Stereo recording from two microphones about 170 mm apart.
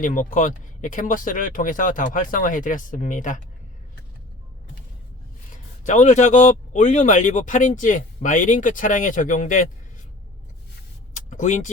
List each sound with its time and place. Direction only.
0.0 s speech: 50° left (ahead or behind)
5.5 s speech: 45° left (ahead or behind)
11.1 s a sound: 45° left (ahead or behind)